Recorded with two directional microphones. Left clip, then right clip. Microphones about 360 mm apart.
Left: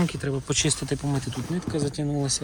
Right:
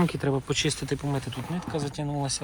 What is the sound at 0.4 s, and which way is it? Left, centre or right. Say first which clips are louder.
Speech: left 2 dB; centre.